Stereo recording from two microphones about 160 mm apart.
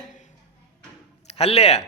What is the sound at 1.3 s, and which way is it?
Speech, 40° left (ahead or behind).